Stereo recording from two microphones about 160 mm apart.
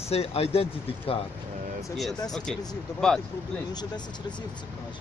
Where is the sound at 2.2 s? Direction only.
5° left (ahead or behind).